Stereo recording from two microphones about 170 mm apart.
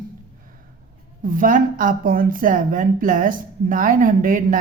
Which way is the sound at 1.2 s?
55° right (ahead or behind).